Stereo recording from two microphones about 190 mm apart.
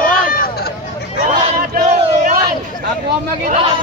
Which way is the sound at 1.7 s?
45° right (ahead or behind).